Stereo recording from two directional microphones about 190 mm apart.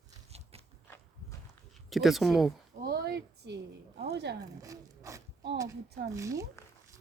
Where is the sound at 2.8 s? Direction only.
60° right (ahead or behind).